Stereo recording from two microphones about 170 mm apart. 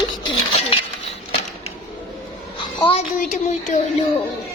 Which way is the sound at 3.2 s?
50° left (ahead or behind).